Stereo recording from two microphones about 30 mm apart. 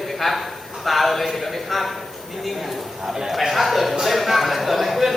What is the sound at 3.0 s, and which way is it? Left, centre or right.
Speech, centre.